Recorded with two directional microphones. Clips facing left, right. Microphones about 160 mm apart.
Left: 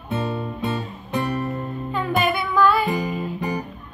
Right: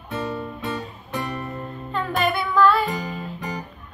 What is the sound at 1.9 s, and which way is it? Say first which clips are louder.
Music: left 1 dB; 5° left (ahead or behind).